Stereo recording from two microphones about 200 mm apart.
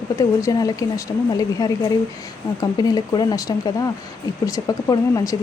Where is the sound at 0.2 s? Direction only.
15° left (ahead or behind).